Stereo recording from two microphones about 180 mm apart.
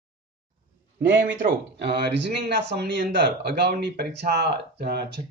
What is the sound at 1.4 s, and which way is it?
Speech, 65° right (ahead or behind).